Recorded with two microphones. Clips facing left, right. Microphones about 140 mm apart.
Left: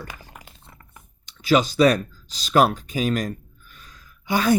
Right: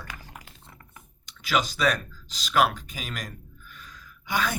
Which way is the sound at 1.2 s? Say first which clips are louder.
Left 8 dB; 30° left (ahead or behind).